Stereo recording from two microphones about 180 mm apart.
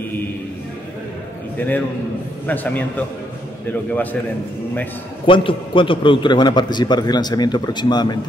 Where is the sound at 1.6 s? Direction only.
10° left (ahead or behind).